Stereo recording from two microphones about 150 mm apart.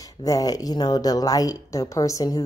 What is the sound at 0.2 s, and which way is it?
Speech, 25° left (ahead or behind).